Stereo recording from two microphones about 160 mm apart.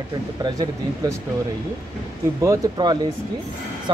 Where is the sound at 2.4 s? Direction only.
20° right (ahead or behind).